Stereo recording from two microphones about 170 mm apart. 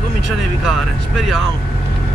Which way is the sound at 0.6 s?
Centre (ahead or behind).